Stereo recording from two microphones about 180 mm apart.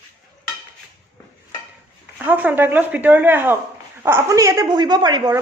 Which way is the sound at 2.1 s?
10° right (ahead or behind).